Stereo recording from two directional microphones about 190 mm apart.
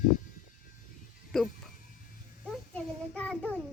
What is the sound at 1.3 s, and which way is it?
Music, centre (ahead or behind).